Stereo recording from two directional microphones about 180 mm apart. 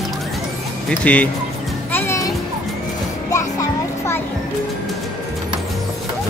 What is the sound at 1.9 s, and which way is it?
Music, 15° left (ahead or behind).